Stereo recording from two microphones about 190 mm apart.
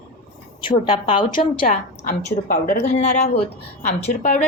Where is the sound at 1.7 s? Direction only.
40° left (ahead or behind).